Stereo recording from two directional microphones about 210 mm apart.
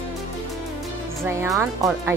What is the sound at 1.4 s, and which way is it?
Speech, 10° right (ahead or behind).